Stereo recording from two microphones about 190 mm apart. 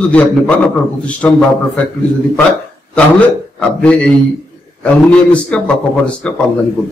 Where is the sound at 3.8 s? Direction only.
5° left (ahead or behind).